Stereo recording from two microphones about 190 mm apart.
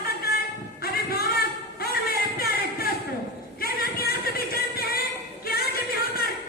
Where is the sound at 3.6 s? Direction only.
50° left (ahead or behind).